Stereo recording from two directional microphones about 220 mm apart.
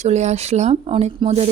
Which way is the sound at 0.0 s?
30° right (ahead or behind).